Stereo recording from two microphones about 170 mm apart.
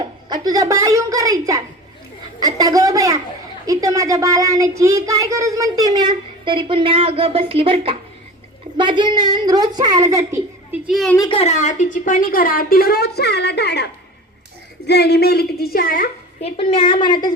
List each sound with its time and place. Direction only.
0.3 s a child's voice: 25° right (ahead or behind)
10.8 s a woman's voice: centre (ahead or behind)
11.2 s a woman's voice: 35° left (ahead or behind); by 13.8 s 80° left
14.8 s a woman's voice: 75° left (ahead or behind); by 16.0 s 60° left (ahead or behind)
16.4 s a woman's voice: 35° left (ahead or behind)